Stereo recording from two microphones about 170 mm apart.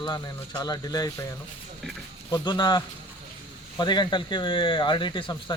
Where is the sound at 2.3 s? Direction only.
25° left (ahead or behind).